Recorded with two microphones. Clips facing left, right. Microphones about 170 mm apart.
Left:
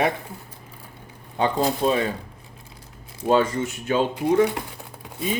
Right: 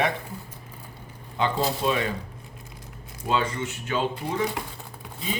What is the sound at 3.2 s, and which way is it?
Speech, 40° left (ahead or behind).